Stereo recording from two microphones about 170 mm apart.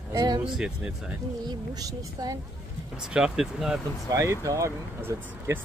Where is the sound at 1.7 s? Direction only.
20° right (ahead or behind).